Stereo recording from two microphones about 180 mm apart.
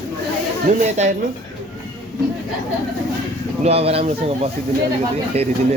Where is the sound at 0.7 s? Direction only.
45° right (ahead or behind).